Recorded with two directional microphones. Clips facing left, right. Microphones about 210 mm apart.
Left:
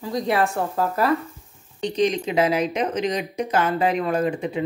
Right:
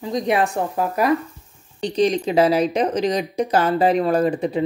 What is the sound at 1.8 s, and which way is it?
Speech, 35° right (ahead or behind).